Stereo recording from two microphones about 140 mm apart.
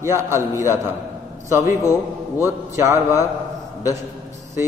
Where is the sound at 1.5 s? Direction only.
20° right (ahead or behind).